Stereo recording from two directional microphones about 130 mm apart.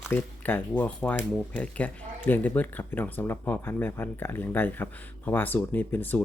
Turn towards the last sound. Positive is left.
turn(degrees=15)  # may be behind; listen again after turning